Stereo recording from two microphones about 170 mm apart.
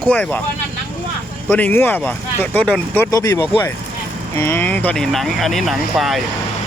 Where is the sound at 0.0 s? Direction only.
10° left (ahead or behind).